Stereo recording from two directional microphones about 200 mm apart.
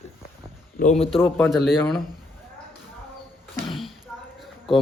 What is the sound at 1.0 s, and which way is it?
Speech, 25° left (ahead or behind).